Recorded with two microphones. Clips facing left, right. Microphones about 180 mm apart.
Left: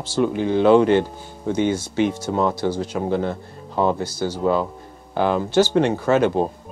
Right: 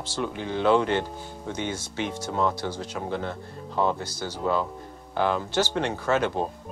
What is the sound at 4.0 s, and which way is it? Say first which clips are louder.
Speech: left 8 dB; 5° left (ahead or behind).